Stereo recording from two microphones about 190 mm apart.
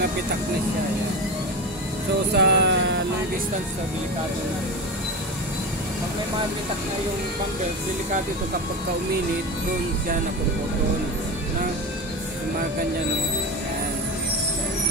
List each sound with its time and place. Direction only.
2.3 s music: 65° right (ahead or behind)